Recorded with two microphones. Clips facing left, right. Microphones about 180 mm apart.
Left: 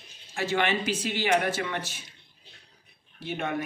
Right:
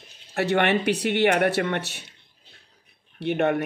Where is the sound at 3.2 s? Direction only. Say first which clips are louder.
Right 9 dB; 65° right (ahead or behind).